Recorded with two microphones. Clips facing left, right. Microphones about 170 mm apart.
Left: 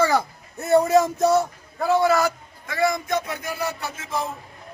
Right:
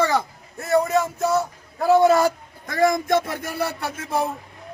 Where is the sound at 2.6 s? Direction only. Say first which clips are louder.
Right 3 dB; 45° right (ahead or behind).